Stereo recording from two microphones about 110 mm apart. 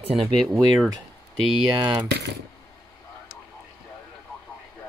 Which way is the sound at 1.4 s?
15° right (ahead or behind).